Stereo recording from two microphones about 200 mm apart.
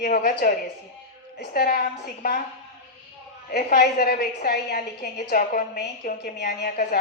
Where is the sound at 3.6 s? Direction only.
40° left (ahead or behind).